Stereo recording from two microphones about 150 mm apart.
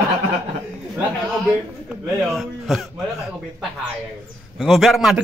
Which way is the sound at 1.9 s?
Centre (ahead or behind).